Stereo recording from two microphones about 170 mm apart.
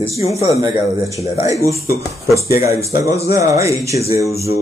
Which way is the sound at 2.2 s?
20° right (ahead or behind).